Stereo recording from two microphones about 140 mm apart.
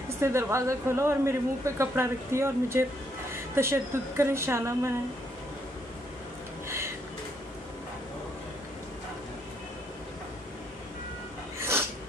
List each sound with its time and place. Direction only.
0.2 s a woman's voice: 20° right (ahead or behind)